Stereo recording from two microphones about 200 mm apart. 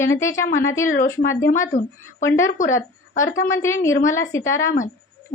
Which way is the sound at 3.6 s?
15° left (ahead or behind).